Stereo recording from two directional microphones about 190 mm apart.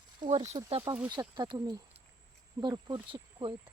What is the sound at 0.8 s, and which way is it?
Speech, 10° right (ahead or behind).